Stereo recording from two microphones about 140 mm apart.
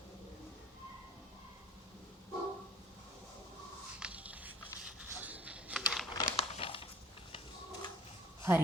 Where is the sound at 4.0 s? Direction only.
10° right (ahead or behind).